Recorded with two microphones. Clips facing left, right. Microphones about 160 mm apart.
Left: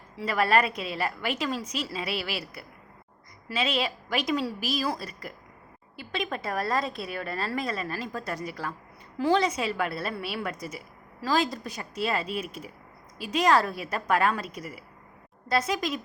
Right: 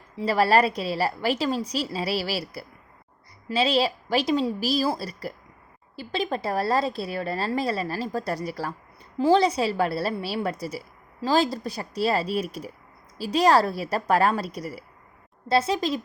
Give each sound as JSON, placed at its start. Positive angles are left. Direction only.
{"t": 0.2, "sound": "a woman's voice", "side_deg": -30}